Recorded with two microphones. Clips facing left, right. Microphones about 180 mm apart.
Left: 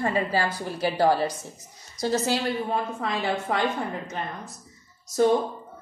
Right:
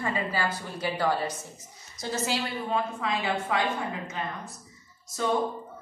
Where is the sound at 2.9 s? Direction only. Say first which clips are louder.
Left 2 dB; 45° left (ahead or behind).